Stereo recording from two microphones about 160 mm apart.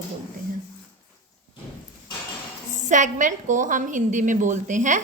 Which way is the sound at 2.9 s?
50° right (ahead or behind).